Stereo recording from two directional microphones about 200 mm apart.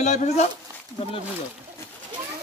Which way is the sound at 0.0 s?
35° left (ahead or behind).